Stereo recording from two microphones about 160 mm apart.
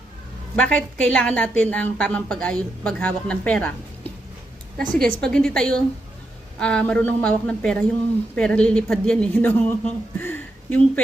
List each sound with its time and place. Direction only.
0.5 s a woman's voice: 5° left (ahead or behind)
4.8 s a woman's voice: 5° left (ahead or behind)
10.2 s a sound: 10° left (ahead or behind)